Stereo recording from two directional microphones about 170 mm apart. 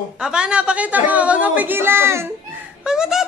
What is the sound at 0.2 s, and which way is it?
A woman's voice, 5° right (ahead or behind).